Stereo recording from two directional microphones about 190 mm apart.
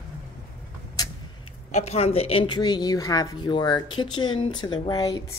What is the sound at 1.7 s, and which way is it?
Speech, 35° left (ahead or behind).